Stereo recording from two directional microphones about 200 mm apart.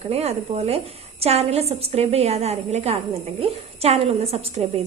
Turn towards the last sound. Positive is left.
turn(degrees=-30)  # may be behind; listen again after turning